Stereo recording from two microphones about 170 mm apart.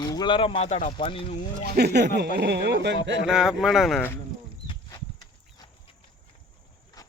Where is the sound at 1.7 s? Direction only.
70° right (ahead or behind); by 2.9 s 90° right.